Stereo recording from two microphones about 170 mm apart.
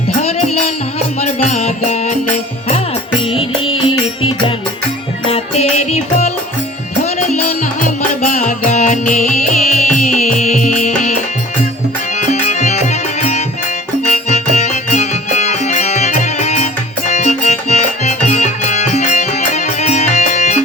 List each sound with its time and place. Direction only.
0.2 s music: 40° left (ahead or behind)
3.2 s music: 35° left (ahead or behind)
8.2 s music: 50° left (ahead or behind)
12.1 s music: 40° left (ahead or behind)